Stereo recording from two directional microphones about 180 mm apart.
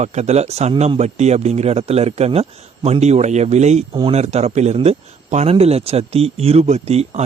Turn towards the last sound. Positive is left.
turn(degrees=-35)  # may be behind; listen again after turning